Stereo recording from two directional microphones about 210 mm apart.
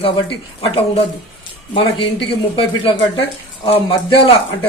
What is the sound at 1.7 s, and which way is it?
Speech, 25° left (ahead or behind).